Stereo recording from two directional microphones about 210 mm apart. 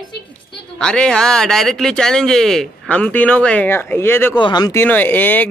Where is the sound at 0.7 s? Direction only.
5° left (ahead or behind).